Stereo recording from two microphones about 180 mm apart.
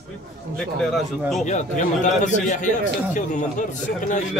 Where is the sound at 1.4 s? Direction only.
40° left (ahead or behind).